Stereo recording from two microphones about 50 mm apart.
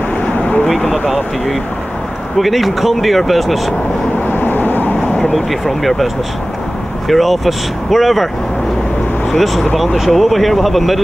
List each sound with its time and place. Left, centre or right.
0.7 s speech: centre
4.3 s vehicle: left
5.3 s speech: centre
7.1 s speech: centre
9.3 s speech: centre